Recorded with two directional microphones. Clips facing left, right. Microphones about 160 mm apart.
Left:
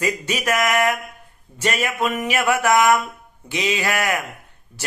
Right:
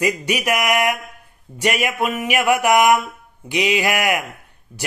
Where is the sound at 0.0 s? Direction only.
15° right (ahead or behind).